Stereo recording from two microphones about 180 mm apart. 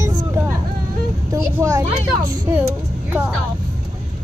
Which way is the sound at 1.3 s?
15° right (ahead or behind).